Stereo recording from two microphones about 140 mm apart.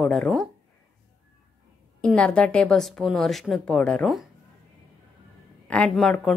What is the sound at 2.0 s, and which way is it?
A woman's voice, 5° left (ahead or behind).